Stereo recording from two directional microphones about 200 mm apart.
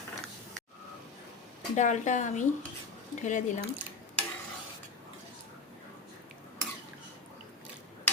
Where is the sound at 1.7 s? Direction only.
35° left (ahead or behind).